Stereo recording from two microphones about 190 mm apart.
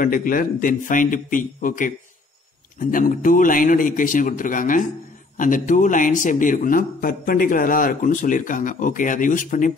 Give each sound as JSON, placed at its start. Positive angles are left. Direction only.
{"t": 0.0, "sound": "a man's voice", "side_deg": 45}